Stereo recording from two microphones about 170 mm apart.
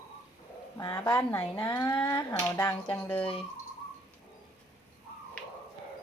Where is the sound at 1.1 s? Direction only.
10° left (ahead or behind).